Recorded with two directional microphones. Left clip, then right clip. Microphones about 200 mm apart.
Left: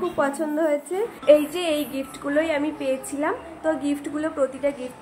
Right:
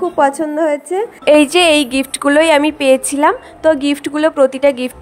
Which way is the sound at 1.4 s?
55° right (ahead or behind).